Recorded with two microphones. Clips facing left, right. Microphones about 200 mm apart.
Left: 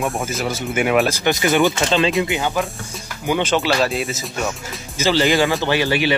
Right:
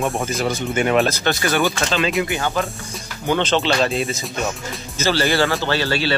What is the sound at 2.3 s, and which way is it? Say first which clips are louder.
Speech: left 1 dB; 15° left (ahead or behind).